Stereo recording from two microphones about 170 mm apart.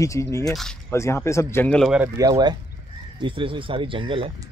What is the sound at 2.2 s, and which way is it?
Speech, 25° right (ahead or behind).